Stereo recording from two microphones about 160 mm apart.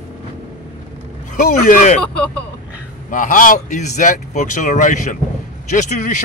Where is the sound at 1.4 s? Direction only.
55° left (ahead or behind).